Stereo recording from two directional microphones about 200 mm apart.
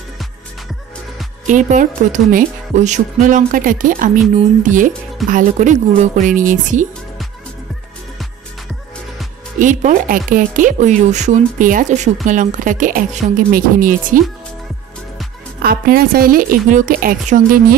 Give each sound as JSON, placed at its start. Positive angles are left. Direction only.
{"t": 1.5, "sound": "speech", "side_deg": -40}
{"t": 9.6, "sound": "speech", "side_deg": -40}
{"t": 15.6, "sound": "a woman's voice", "side_deg": -50}